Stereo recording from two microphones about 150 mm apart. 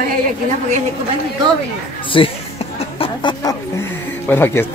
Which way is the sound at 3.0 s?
30° left (ahead or behind).